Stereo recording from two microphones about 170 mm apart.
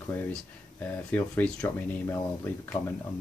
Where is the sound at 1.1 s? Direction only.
10° left (ahead or behind).